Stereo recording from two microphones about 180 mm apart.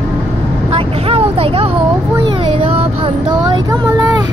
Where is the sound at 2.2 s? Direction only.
30° right (ahead or behind).